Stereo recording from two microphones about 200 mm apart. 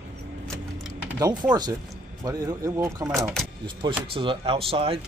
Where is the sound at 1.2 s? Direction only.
20° right (ahead or behind).